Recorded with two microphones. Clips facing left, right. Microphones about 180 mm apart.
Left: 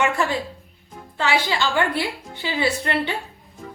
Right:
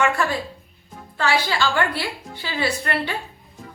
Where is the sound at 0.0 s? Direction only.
20° left (ahead or behind).